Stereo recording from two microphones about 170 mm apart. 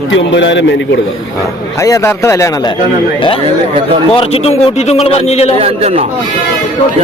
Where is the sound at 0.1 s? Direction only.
90° left.